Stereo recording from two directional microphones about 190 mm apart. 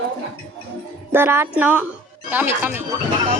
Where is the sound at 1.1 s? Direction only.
10° right (ahead or behind).